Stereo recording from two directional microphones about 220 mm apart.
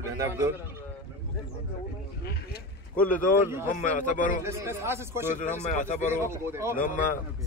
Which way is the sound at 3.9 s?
35° left (ahead or behind).